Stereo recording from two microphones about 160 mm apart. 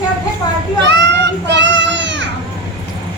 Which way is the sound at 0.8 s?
90° right.